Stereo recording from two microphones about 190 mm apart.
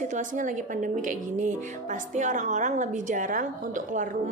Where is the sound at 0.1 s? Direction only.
40° right (ahead or behind).